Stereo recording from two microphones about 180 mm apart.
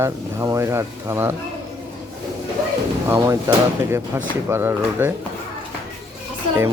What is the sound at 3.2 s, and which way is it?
Speech, 15° right (ahead or behind).